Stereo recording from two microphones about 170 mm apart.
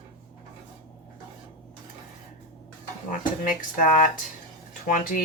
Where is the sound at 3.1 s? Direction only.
50° left (ahead or behind).